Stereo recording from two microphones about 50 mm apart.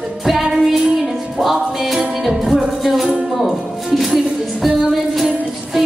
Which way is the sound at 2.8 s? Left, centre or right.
Centre.